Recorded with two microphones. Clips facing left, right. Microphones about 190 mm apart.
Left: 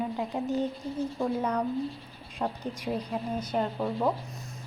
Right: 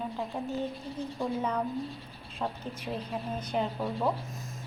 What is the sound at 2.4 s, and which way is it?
A woman's voice, 15° left (ahead or behind).